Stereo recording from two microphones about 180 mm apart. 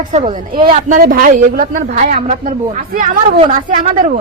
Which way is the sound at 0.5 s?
30° right (ahead or behind).